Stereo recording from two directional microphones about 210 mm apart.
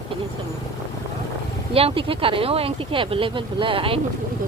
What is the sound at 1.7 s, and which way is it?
Speech, 25° right (ahead or behind).